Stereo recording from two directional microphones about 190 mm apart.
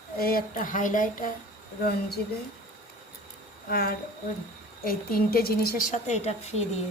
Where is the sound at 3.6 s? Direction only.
50° left (ahead or behind).